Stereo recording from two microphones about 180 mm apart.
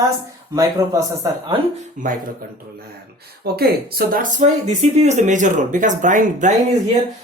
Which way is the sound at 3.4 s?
60° right (ahead or behind).